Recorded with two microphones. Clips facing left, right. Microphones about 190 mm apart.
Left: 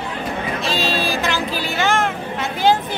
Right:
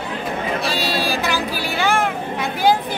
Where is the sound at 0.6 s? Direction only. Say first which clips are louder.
Left 3 dB; 10° right (ahead or behind).